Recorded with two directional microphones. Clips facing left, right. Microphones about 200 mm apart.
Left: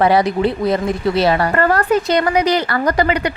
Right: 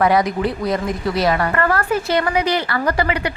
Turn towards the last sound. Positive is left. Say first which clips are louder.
# left 3 dB
turn(degrees=40)  # may be behind; listen again after turning